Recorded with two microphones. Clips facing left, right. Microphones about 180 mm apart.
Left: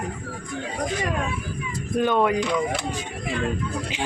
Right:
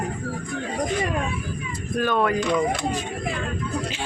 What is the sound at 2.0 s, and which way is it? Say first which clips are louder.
Speech: left 1 dB; 20° left (ahead or behind).